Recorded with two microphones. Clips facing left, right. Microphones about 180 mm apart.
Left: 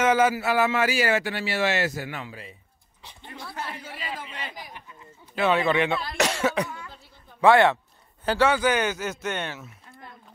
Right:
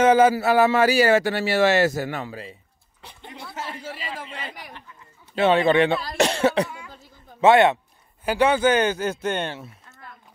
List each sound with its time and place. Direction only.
0.0 s a man's voice: 30° right (ahead or behind)
3.0 s a sound: 60° right (ahead or behind)
3.5 s speech: 25° right (ahead or behind)
5.3 s a man's voice: 30° right (ahead or behind)
7.3 s speech: 20° right (ahead or behind)